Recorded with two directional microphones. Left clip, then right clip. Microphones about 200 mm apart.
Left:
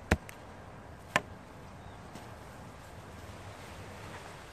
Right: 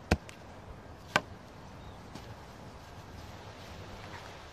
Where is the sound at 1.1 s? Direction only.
40° right (ahead or behind).